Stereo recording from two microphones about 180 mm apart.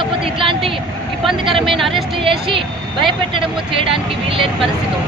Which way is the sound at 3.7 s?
30° right (ahead or behind).